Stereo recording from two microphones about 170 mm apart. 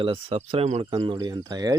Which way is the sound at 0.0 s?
30° right (ahead or behind).